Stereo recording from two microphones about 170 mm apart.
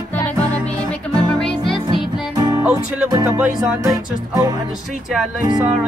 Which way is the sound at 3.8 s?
20° right (ahead or behind).